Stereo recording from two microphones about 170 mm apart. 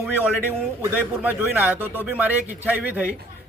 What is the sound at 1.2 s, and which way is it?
Speech, 10° right (ahead or behind).